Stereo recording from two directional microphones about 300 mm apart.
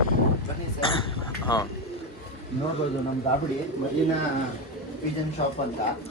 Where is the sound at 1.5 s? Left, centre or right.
Centre.